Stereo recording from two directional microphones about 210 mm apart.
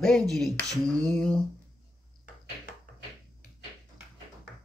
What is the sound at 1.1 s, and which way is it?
Speech, centre (ahead or behind).